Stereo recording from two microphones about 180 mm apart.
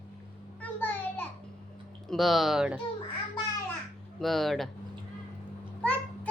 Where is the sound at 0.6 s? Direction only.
10° left (ahead or behind).